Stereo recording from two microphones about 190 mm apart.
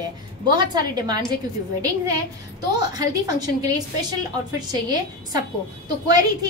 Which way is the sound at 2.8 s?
20° right (ahead or behind).